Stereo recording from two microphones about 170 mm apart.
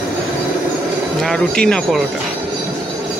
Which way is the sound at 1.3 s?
5° left (ahead or behind).